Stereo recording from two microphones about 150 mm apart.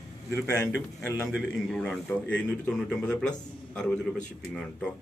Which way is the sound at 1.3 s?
5° left (ahead or behind).